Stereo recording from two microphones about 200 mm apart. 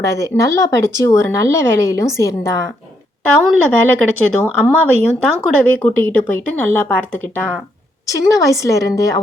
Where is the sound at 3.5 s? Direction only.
90° right.